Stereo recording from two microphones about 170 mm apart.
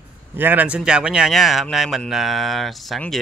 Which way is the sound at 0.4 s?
10° right (ahead or behind).